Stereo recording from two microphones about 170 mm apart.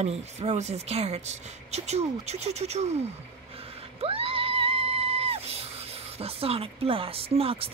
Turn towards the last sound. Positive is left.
turn(degrees=-35)  # may be behind; listen again after turning